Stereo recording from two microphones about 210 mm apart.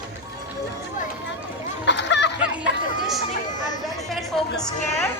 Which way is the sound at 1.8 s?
55° left (ahead or behind).